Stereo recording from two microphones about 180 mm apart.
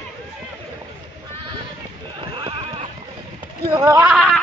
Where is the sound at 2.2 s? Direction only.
30° right (ahead or behind).